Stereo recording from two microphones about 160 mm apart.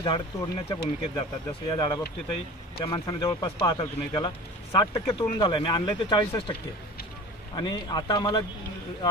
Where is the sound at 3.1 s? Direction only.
30° left (ahead or behind).